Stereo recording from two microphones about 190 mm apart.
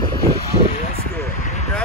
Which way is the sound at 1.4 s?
40° left (ahead or behind).